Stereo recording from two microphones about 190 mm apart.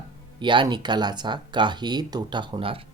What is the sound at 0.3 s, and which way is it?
Speech, 25° right (ahead or behind).